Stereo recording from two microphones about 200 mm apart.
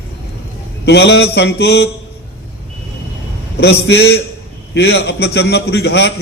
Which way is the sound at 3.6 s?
55° left (ahead or behind).